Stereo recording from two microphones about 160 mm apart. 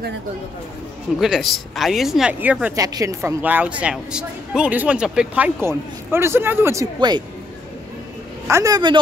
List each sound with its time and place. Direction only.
1.2 s speech: centre (ahead or behind)
2.7 s a woman's voice: 20° right (ahead or behind)
8.5 s a man's voice: 20° right (ahead or behind)